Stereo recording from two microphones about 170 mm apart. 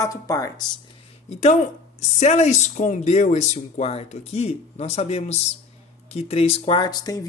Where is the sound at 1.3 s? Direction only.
40° left (ahead or behind).